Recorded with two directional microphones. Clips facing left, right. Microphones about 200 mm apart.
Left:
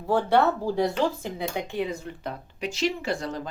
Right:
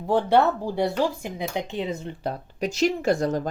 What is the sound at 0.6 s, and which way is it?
Speech, 15° right (ahead or behind).